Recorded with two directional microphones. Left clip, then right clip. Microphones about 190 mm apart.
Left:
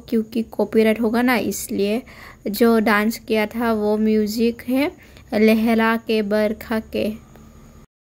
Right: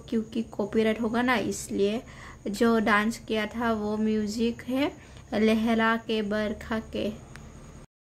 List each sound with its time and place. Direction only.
0.1 s a woman's voice: 25° left (ahead or behind)